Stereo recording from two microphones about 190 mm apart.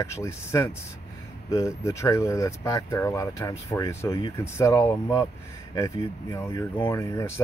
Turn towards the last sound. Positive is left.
turn(degrees=15)  # may be behind; listen again after turning